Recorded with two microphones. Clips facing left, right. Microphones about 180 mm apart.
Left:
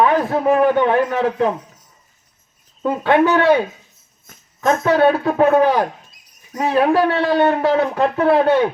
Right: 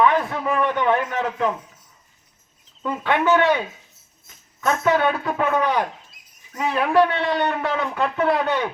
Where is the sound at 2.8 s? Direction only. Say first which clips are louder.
Left 5 dB; 40° left (ahead or behind).